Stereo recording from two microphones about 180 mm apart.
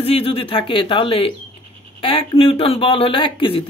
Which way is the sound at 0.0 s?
30° left (ahead or behind).